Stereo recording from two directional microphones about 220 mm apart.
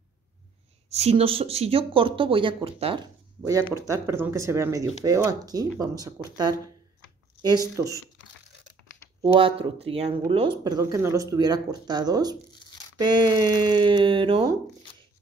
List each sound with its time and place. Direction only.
0.8 s speech: 30° right (ahead or behind)
3.7 s speech: 10° right (ahead or behind)
9.2 s speech: 25° right (ahead or behind)